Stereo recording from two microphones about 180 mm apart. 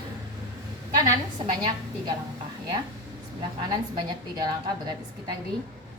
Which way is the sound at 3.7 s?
20° right (ahead or behind).